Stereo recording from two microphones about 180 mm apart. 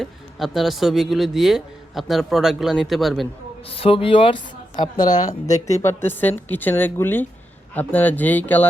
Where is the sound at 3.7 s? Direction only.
30° left (ahead or behind).